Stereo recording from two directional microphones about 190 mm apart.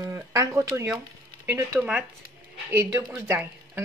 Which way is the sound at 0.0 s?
15° right (ahead or behind).